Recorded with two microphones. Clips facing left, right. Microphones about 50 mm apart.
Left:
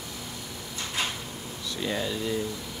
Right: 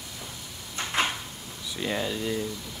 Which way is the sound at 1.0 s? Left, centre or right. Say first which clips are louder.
Right 5 dB; right.